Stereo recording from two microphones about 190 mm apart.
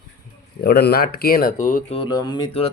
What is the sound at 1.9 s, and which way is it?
Speech, 25° left (ahead or behind).